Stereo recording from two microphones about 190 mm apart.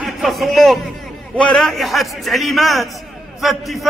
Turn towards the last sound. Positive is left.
turn(degrees=0)  # may be behind; listen again after turning